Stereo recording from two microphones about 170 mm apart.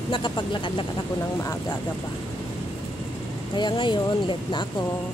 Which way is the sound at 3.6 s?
30° left (ahead or behind).